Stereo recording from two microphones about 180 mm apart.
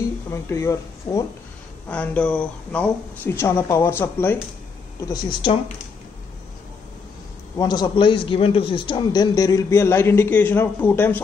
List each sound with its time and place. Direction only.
0.3 s a woman's voice: 15° left (ahead or behind)
5.0 s a man's voice: 25° left (ahead or behind)
7.5 s a man's voice: 20° left (ahead or behind)